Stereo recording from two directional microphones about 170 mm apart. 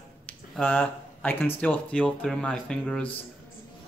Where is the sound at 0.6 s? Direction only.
10° left (ahead or behind).